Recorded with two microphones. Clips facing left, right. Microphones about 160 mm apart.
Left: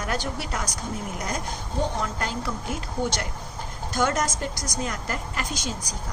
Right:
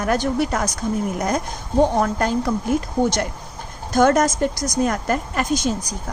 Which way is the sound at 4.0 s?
45° right (ahead or behind).